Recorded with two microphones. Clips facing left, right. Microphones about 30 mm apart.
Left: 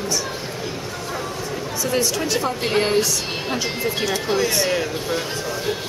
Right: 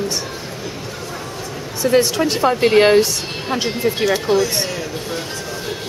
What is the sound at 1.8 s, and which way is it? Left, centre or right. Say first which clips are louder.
Speech: right 7 dB; right.